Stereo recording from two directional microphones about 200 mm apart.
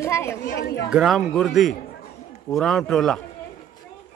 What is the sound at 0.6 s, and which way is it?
Speech, 55° left (ahead or behind).